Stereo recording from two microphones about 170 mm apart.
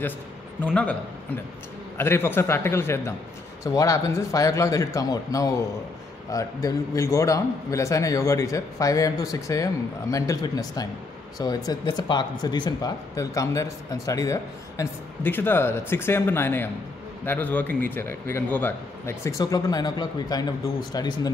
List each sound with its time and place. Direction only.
0.6 s a man's voice: 5° left (ahead or behind); by 21.3 s 25° left (ahead or behind)